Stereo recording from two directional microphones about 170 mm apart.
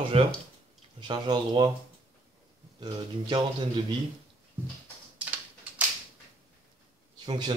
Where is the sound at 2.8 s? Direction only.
30° right (ahead or behind).